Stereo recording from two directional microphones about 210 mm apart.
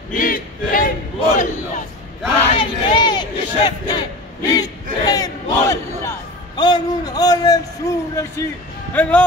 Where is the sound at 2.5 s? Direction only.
20° left (ahead or behind).